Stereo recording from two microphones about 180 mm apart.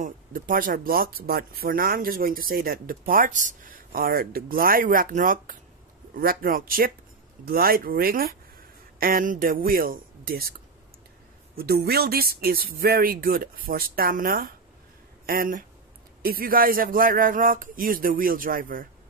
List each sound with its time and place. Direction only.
0.0 s speech: 50° right (ahead or behind)
11.5 s speech: 60° right (ahead or behind)